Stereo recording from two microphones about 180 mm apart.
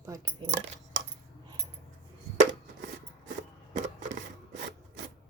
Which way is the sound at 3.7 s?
45° right (ahead or behind).